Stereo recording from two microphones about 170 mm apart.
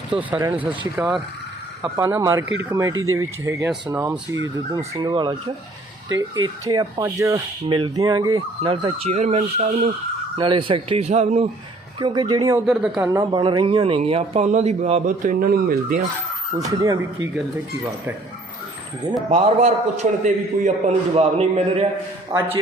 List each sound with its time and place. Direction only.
0.1 s speech: 10° right (ahead or behind)
2.0 s speech: 15° right (ahead or behind)
9.1 s speech: 45° right (ahead or behind)
10.3 s a man's voice: 30° right (ahead or behind)
11.9 s speech: 25° right (ahead or behind)
12.6 s speech: 5° right (ahead or behind)
13.1 s a man's voice: 20° right (ahead or behind); by 15.0 s 40° right (ahead or behind)
15.0 s speech: 55° right (ahead or behind)
16.6 s speech: 20° right (ahead or behind)
19.3 s a man's voice: 40° right (ahead or behind)
22.3 s a man's voice: 15° right (ahead or behind)